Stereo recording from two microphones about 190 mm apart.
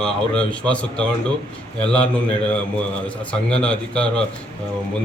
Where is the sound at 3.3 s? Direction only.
5° left (ahead or behind).